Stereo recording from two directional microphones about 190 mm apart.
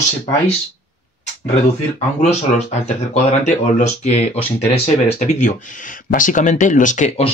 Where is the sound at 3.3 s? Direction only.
35° left (ahead or behind).